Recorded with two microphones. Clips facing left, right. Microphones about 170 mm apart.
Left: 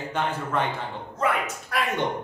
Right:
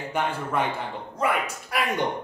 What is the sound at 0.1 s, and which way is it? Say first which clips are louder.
Speech: even; 10° right (ahead or behind).